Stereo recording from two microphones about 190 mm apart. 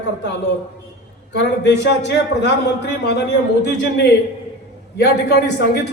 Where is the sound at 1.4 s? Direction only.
65° left (ahead or behind).